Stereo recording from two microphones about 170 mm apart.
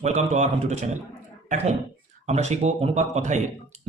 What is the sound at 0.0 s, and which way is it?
Speech, 40° right (ahead or behind).